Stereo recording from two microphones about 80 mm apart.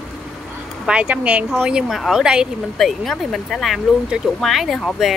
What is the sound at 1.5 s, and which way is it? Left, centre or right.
Speech, centre.